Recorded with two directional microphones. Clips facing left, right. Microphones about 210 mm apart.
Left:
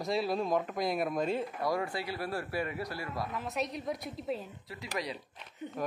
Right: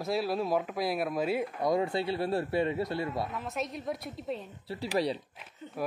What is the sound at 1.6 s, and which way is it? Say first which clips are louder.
Speech: right 8 dB; 20° right (ahead or behind).